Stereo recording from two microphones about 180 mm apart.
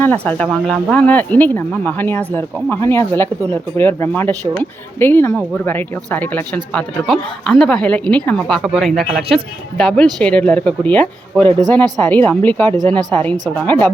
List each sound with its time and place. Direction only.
0.0 s speech: 10° left (ahead or behind)